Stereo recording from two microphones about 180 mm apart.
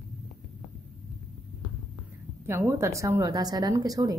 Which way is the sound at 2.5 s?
15° right (ahead or behind).